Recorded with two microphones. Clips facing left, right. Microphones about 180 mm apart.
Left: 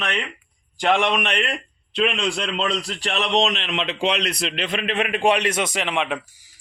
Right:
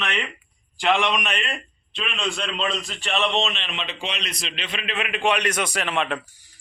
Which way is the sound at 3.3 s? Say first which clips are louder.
Left 5 dB; 80° left.